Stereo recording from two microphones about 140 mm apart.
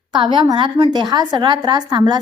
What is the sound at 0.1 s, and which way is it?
A woman's voice, 35° right (ahead or behind).